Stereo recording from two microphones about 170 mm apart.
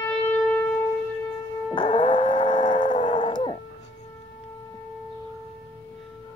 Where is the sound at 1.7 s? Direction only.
30° left (ahead or behind).